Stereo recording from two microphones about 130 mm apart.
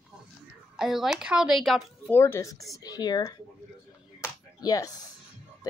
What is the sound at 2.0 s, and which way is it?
Speech, 20° left (ahead or behind).